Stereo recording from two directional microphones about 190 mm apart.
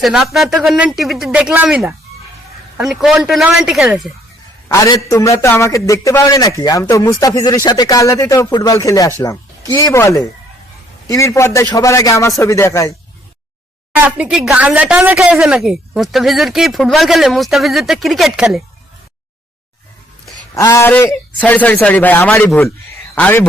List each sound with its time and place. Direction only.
0.0 s a woman's voice: 5° right (ahead or behind)
4.7 s speech: 15° left (ahead or behind)
13.9 s a woman's voice: 5° right (ahead or behind)
20.5 s speech: 15° left (ahead or behind)